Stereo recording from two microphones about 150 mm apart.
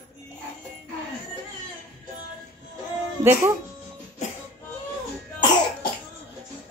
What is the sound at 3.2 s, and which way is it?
Speech, 15° right (ahead or behind).